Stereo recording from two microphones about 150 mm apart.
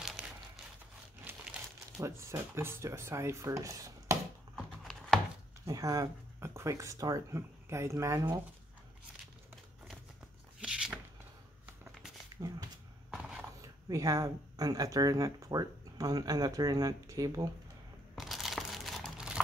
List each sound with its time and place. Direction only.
0.0 s crumpling: 5° right (ahead or behind)
1.2 s speech: 15° right (ahead or behind)
5.7 s speech: 25° right (ahead or behind)
10.6 s a sound: 5° right (ahead or behind)
12.4 s shuffling cards: 25° right (ahead or behind)
13.1 s a sound: centre (ahead or behind)
13.6 s speech: 25° right (ahead or behind)
18.1 s crumpling: centre (ahead or behind)